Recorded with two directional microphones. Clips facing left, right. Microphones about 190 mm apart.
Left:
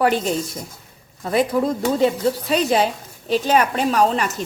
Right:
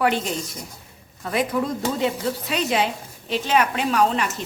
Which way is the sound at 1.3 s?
30° left (ahead or behind).